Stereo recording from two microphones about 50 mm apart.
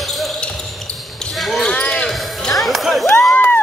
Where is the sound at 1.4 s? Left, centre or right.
Centre.